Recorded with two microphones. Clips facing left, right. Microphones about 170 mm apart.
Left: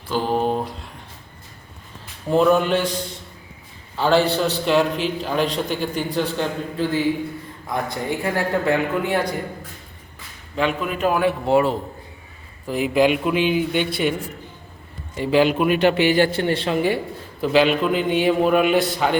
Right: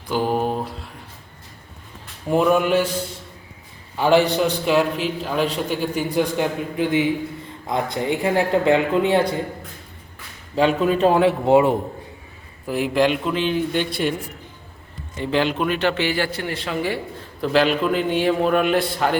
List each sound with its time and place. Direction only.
0.1 s mantra: 10° right (ahead or behind)
2.3 s a man's voice: 10° right (ahead or behind)
3.9 s a man's voice: 15° right (ahead or behind)
10.5 s speech: 35° right (ahead or behind)
12.6 s a man's voice: centre (ahead or behind)
15.2 s a man's voice: 10° left (ahead or behind)
17.4 s a man's voice: centre (ahead or behind)